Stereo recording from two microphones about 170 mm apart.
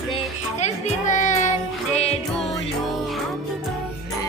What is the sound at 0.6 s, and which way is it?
Music, 45° left (ahead or behind).